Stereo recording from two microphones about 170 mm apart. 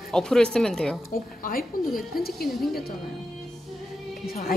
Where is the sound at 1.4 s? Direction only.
55° left (ahead or behind).